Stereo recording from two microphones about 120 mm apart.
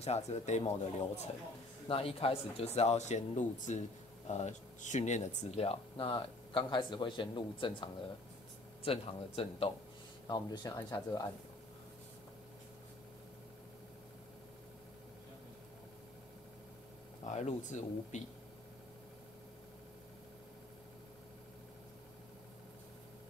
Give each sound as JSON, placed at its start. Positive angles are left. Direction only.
{"t": 0.0, "sound": "speech", "side_deg": 60}
{"t": 1.9, "sound": "speech", "side_deg": 50}
{"t": 8.8, "sound": "speech", "side_deg": 55}
{"t": 10.2, "sound": "speech", "side_deg": 35}
{"t": 17.3, "sound": "speech", "side_deg": 70}